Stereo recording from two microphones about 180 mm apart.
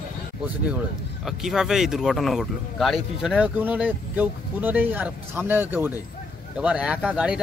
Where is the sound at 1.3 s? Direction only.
Centre (ahead or behind).